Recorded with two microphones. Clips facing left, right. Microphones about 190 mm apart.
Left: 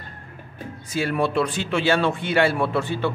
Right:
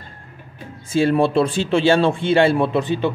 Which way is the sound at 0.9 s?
30° right (ahead or behind).